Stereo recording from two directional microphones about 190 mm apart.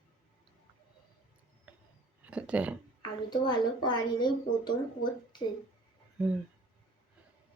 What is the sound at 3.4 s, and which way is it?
A woman's voice, 25° left (ahead or behind).